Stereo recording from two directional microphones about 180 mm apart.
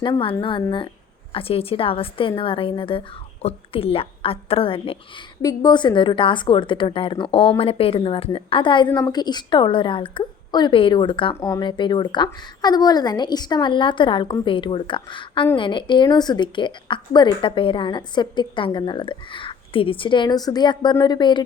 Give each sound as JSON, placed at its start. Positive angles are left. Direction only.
{"t": 0.0, "sound": "a woman's voice", "side_deg": 25}